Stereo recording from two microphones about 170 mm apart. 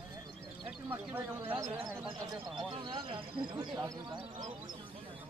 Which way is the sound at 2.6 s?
25° right (ahead or behind).